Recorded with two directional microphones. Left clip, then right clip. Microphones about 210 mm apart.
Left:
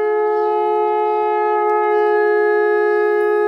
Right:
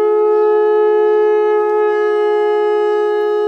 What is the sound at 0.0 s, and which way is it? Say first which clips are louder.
Shofar: right 4 dB; 55° right (ahead or behind).